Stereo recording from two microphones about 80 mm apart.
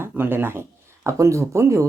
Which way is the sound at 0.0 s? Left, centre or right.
Right.